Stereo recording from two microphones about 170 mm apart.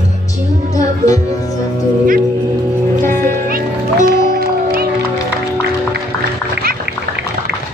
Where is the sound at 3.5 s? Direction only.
60° right (ahead or behind).